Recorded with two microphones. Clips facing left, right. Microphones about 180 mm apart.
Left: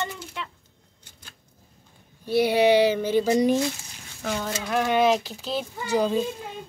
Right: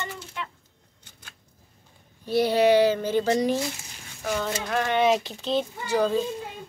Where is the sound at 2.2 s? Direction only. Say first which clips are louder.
Left 1 dB; 10° left (ahead or behind).